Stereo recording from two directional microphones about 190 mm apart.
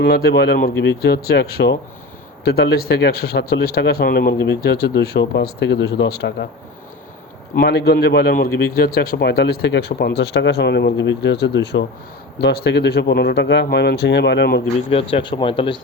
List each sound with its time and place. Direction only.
0.0 s a man's voice: 55° left (ahead or behind)
7.5 s a man's voice: 55° left (ahead or behind)
14.8 s speech: 30° left (ahead or behind)